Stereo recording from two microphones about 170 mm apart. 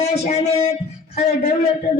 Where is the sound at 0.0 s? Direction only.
40° left (ahead or behind).